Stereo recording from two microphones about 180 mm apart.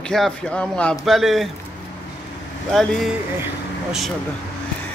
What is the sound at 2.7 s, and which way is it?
Speech, centre (ahead or behind).